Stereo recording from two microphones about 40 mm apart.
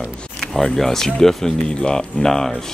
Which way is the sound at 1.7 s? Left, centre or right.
Left.